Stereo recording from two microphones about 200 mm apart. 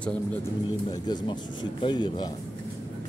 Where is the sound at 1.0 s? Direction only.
20° left (ahead or behind).